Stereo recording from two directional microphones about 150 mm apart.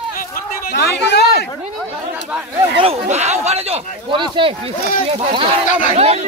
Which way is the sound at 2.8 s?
40° right (ahead or behind).